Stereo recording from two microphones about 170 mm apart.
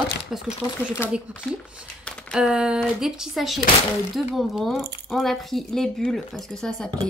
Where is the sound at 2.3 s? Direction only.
5° right (ahead or behind).